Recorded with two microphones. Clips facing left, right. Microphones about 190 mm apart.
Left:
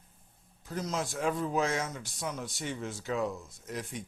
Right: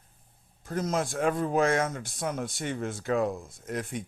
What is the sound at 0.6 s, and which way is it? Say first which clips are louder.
Speech: right 5 dB; 50° right (ahead or behind).